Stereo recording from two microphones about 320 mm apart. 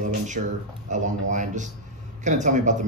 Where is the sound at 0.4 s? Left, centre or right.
Right.